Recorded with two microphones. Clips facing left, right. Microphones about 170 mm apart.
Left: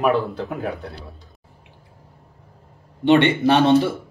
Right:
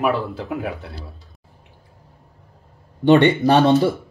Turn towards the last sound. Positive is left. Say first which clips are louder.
# right 2 dB
turn(degrees=-40)  # may be behind; listen again after turning